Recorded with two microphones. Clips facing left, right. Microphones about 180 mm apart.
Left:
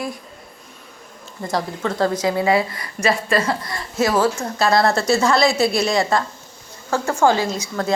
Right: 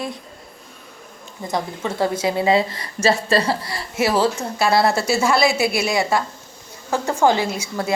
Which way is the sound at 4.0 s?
15° right (ahead or behind).